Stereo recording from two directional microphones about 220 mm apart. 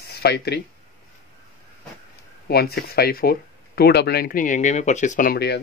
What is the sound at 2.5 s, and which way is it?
Speech, 45° left (ahead or behind).